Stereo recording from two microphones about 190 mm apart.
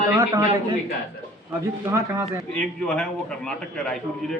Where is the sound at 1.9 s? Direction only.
15° right (ahead or behind).